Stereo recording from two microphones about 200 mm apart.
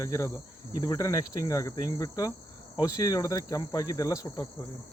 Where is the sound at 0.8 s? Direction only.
15° left (ahead or behind).